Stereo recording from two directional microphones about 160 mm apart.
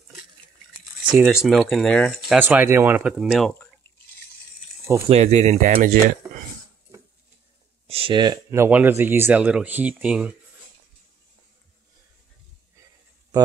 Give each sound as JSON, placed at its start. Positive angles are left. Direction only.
{"t": 1.1, "sound": "speech", "side_deg": -5}
{"t": 2.3, "sound": "speech", "side_deg": -10}
{"t": 3.1, "sound": "speech", "side_deg": 0}
{"t": 5.1, "sound": "speech", "side_deg": -45}
{"t": 7.8, "sound": "speech", "side_deg": -35}